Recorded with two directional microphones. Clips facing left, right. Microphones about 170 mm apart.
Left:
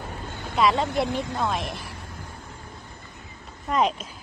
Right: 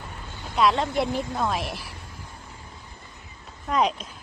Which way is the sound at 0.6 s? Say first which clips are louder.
Even; centre (ahead or behind).